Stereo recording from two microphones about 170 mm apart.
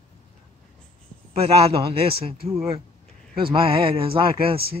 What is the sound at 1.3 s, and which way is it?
Speech, 35° right (ahead or behind).